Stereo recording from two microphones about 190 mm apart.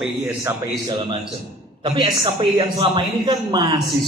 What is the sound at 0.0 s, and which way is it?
Speech, 10° right (ahead or behind).